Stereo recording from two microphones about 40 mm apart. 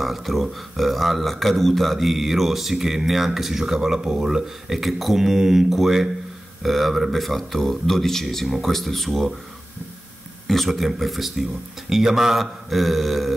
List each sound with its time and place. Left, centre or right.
0.0 s speech: centre
10.4 s speech: centre